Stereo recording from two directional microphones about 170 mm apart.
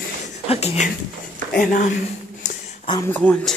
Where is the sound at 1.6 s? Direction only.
50° left (ahead or behind).